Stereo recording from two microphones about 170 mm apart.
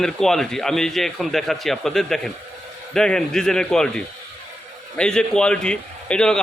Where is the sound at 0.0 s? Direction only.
Centre (ahead or behind).